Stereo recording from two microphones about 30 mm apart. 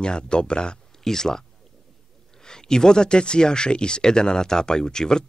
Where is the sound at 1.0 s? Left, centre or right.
Centre.